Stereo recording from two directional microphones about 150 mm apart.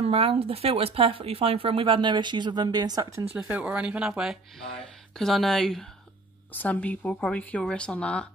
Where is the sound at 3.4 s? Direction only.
5° right (ahead or behind).